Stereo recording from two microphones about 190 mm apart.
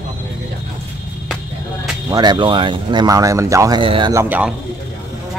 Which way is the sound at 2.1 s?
20° right (ahead or behind).